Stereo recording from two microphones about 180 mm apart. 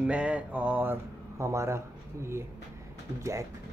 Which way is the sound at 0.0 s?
5° right (ahead or behind).